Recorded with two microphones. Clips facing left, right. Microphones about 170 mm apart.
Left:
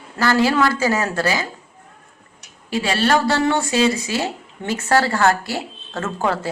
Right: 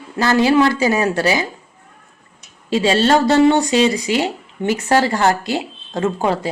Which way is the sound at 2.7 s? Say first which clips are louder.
Right 4 dB; 25° right (ahead or behind).